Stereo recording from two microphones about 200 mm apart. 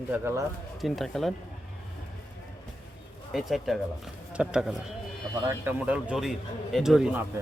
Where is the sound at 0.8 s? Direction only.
Centre (ahead or behind).